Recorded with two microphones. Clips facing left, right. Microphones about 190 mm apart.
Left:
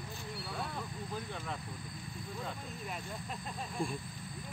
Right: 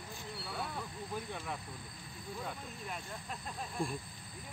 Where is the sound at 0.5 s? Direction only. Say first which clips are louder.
Even; centre (ahead or behind).